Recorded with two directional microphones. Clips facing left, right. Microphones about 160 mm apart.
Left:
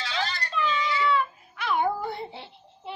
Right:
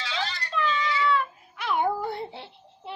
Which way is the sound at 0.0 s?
45° left (ahead or behind).